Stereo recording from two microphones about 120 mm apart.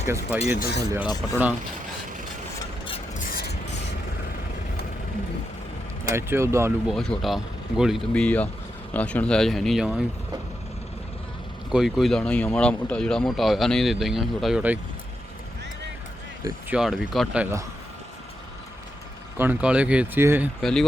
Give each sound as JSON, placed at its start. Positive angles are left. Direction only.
{"t": 0.4, "sound": "speech", "side_deg": -20}
{"t": 1.0, "sound": "speech", "side_deg": 35}
{"t": 6.1, "sound": "speech", "side_deg": -20}
{"t": 6.8, "sound": "speech", "side_deg": 5}
{"t": 8.1, "sound": "speech", "side_deg": 10}
{"t": 11.7, "sound": "speech", "side_deg": -5}
{"t": 16.6, "sound": "speech", "side_deg": -5}
{"t": 19.4, "sound": "speech", "side_deg": -15}
{"t": 20.6, "sound": "speech", "side_deg": 5}